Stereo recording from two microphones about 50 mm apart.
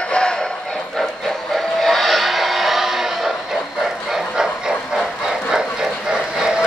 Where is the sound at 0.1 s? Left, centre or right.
Centre.